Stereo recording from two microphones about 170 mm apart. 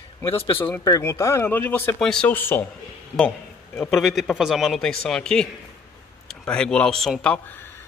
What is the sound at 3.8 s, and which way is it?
A man's voice, centre (ahead or behind).